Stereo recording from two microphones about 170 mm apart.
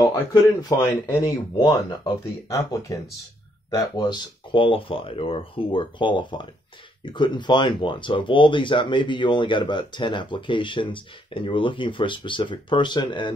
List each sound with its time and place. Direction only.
0.3 s speech: 20° left (ahead or behind)
3.7 s speech: 25° left (ahead or behind)